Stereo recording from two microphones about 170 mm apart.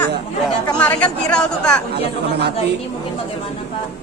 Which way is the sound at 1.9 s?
75° right (ahead or behind).